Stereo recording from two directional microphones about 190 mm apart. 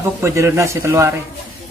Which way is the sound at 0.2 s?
15° right (ahead or behind).